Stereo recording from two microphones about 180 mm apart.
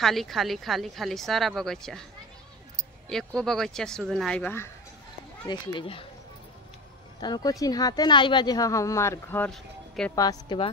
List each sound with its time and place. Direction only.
0.0 s speech: centre (ahead or behind)
3.1 s speech: 5° left (ahead or behind)
5.5 s speech: 25° left (ahead or behind)
7.2 s speech: 20° left (ahead or behind); by 10.1 s 5° left (ahead or behind)
10.1 s speech: 25° left (ahead or behind)